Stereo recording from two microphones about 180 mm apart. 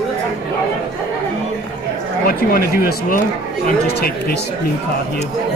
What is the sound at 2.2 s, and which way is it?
Speech, 55° left (ahead or behind).